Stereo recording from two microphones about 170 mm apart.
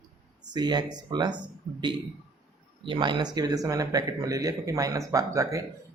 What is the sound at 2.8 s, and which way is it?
Speech, 30° right (ahead or behind).